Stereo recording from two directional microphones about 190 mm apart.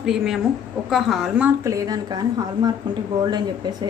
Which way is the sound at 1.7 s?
20° right (ahead or behind).